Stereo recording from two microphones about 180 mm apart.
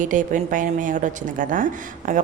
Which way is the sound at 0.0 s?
45° right (ahead or behind).